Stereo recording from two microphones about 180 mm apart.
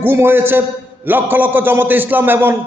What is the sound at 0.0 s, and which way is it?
A man's voice, 10° right (ahead or behind).